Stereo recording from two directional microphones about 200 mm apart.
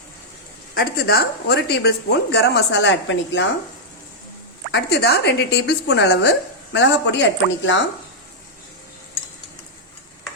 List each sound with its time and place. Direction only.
0.7 s speech: 50° left (ahead or behind); by 3.4 s 65° left (ahead or behind)
4.7 s speech: 55° left (ahead or behind)